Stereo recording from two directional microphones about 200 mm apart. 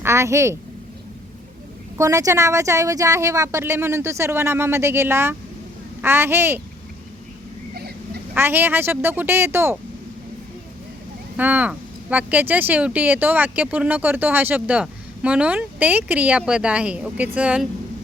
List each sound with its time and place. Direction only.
0.0 s a woman's voice: 15° right (ahead or behind)
2.0 s speech: 15° right (ahead or behind)
7.8 s a sound: 50° right (ahead or behind)
8.4 s speech: 10° right (ahead or behind)
11.3 s speech: 10° right (ahead or behind)